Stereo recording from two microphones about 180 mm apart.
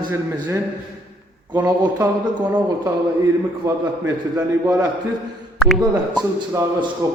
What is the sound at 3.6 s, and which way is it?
A man's voice, 15° right (ahead or behind).